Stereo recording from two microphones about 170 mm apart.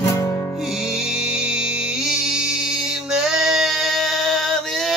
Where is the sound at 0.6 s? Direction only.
Centre (ahead or behind).